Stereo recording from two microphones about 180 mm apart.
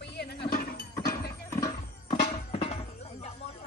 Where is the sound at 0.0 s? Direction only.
65° left (ahead or behind).